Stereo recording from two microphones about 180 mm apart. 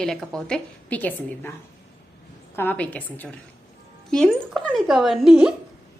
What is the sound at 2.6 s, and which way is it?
A woman's voice, 10° left (ahead or behind).